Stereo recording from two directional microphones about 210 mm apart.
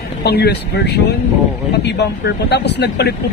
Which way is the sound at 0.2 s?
50° left (ahead or behind).